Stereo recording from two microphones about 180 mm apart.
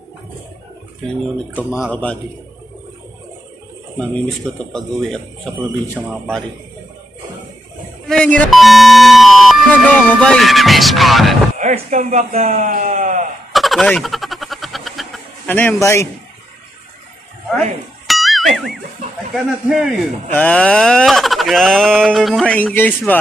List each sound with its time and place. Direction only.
1.0 s speech: 10° left (ahead or behind)
4.0 s speech: 5° left (ahead or behind)
8.1 s speech: 5° left (ahead or behind)
11.5 s speech: 45° right (ahead or behind)
12.5 s speech: 50° right (ahead or behind)
13.5 s a sound: centre (ahead or behind)
15.4 s speech: 10° left (ahead or behind)
18.0 s music: centre (ahead or behind)
19.3 s speech: centre (ahead or behind)